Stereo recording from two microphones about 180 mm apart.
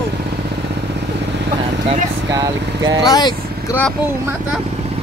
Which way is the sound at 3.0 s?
25° left (ahead or behind).